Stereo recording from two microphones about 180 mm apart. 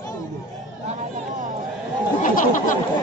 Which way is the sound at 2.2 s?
45° left (ahead or behind).